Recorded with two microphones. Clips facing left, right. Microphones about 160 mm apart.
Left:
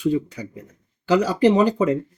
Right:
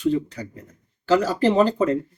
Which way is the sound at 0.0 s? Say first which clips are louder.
Left 1 dB; 10° left (ahead or behind).